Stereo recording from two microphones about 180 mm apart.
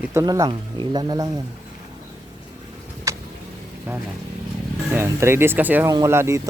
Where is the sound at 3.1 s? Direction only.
15° right (ahead or behind).